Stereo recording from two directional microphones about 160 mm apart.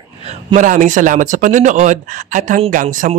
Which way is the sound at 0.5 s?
55° right (ahead or behind).